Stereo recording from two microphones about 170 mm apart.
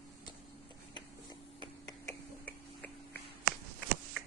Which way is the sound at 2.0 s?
10° left (ahead or behind).